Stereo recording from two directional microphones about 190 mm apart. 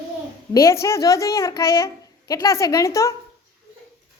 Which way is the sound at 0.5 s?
15° left (ahead or behind).